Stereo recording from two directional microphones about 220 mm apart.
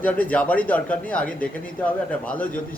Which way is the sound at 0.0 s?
5° left (ahead or behind).